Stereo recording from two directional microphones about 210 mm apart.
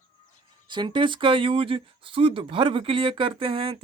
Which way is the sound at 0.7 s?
20° right (ahead or behind).